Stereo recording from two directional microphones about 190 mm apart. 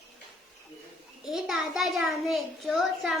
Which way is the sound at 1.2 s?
Centre (ahead or behind).